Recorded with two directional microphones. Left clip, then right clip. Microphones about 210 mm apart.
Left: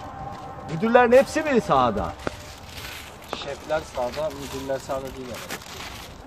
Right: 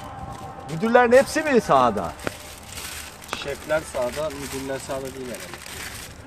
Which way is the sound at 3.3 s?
25° right (ahead or behind).